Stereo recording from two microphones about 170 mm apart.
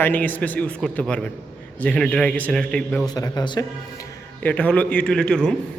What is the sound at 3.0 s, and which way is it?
Speech, 25° left (ahead or behind).